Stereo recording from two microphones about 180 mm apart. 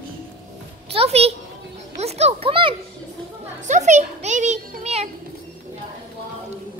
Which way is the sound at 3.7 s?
40° right (ahead or behind).